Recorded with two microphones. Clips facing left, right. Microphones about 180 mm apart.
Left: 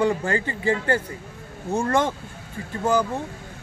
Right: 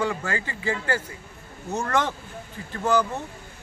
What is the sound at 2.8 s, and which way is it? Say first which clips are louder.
Speech: left 1 dB; 10° left (ahead or behind).